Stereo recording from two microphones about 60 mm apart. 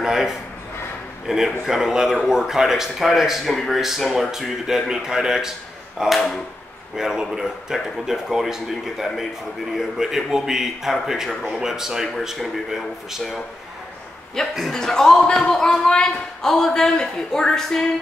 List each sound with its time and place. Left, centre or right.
0.0 s a man's voice: centre
14.4 s a man's voice: centre